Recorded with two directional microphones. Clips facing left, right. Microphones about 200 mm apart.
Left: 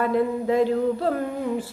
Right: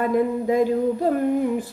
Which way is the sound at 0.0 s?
15° right (ahead or behind).